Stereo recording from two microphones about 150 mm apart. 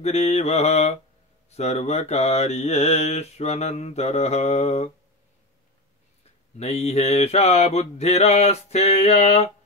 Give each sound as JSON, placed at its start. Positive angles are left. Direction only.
{"t": 0.0, "sound": "mantra", "side_deg": 45}
{"t": 6.6, "sound": "mantra", "side_deg": 45}